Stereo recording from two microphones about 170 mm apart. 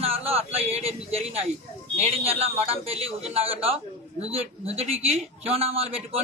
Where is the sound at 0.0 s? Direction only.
35° right (ahead or behind).